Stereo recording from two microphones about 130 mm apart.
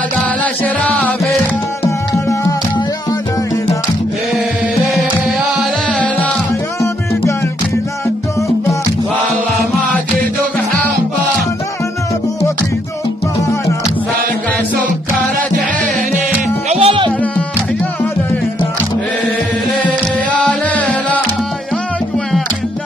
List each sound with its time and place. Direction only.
0.4 s music: 10° left (ahead or behind)
1.9 s music: 25° left (ahead or behind)
16.6 s music: 55° right (ahead or behind)
20.3 s music: 10° left (ahead or behind)